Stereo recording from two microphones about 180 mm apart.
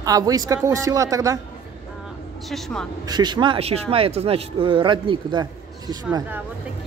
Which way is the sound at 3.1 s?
25° right (ahead or behind).